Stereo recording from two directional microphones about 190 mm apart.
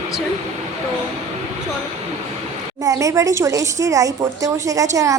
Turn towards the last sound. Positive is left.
turn(degrees=-15)  # may be behind; listen again after turning